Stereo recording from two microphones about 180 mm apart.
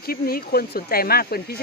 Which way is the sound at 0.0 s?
55° left (ahead or behind).